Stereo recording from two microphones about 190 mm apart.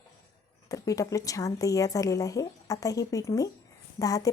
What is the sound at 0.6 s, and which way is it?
A woman's voice, 20° left (ahead or behind).